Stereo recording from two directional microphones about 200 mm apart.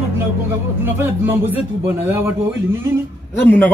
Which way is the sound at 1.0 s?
10° right (ahead or behind).